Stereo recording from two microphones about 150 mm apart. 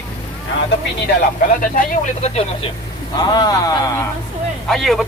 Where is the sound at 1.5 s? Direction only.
65° left (ahead or behind); by 2.7 s 45° left (ahead or behind).